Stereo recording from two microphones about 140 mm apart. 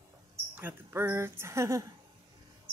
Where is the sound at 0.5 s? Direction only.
15° right (ahead or behind).